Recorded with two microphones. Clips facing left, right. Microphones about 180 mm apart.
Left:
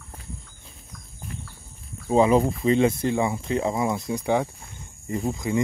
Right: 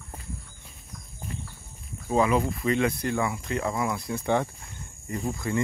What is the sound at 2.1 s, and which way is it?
Speech, 25° left (ahead or behind).